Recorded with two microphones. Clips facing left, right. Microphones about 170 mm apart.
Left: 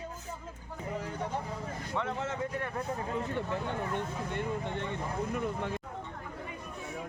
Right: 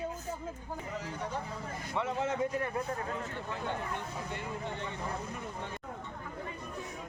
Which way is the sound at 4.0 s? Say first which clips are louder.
Left 5 dB; 55° left (ahead or behind).